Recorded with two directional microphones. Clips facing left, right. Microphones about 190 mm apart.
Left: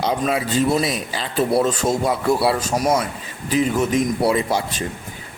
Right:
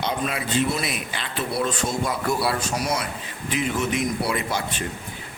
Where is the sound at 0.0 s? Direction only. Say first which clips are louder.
Left 6 dB; 40° left (ahead or behind).